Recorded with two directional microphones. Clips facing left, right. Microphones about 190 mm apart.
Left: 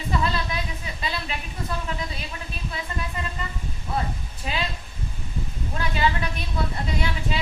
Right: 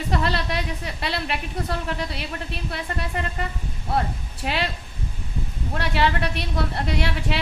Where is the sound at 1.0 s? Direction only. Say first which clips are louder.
Right 4 dB; 70° right (ahead or behind).